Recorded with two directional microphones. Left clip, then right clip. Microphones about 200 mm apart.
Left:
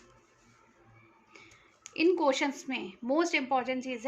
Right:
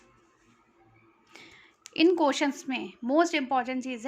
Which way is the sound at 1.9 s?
40° right (ahead or behind).